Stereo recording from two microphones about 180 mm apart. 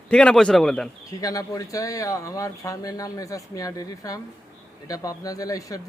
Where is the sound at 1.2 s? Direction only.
20° left (ahead or behind).